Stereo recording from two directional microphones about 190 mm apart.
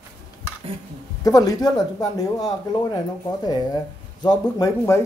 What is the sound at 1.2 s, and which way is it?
Speech, 20° left (ahead or behind).